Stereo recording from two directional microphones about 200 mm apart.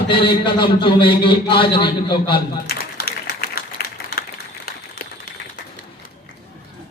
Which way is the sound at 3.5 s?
50° left (ahead or behind).